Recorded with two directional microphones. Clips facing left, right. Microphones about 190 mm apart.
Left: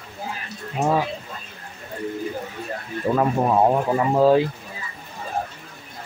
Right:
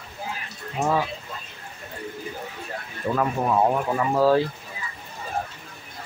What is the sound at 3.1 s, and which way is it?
Speech, 25° left (ahead or behind).